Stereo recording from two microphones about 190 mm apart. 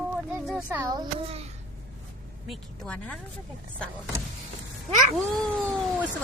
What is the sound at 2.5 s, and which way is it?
Speech, 5° left (ahead or behind).